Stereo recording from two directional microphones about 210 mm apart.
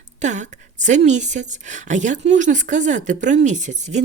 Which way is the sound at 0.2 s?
35° right (ahead or behind).